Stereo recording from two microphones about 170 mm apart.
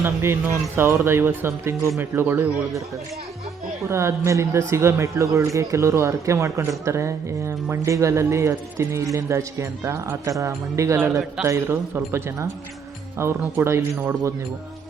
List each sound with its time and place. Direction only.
0.0 s speech: 15° right (ahead or behind)
3.8 s speech: 15° right (ahead or behind)